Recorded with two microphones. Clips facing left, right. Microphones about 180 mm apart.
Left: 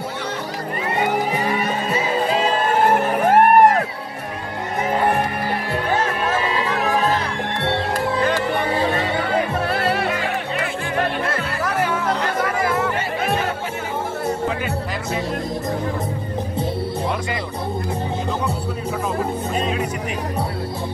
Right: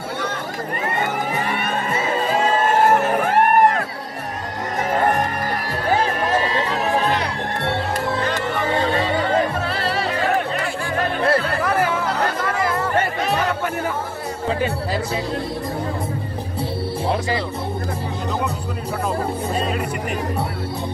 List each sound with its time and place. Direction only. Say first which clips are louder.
1.0 s music: left 3 dB; 50° right (ahead or behind)
3.3 s music: left 5 dB; 45° left (ahead or behind)
6.4 s music: even; 35° right (ahead or behind)
9.7 s music: left 2 dB; 55° left (ahead or behind)